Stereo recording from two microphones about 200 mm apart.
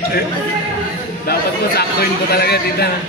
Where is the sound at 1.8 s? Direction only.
50° left (ahead or behind).